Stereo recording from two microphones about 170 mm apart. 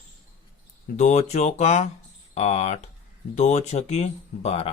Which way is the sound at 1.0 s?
40° left (ahead or behind).